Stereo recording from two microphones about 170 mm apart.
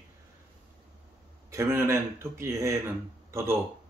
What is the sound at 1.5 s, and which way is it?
Speech, 15° right (ahead or behind).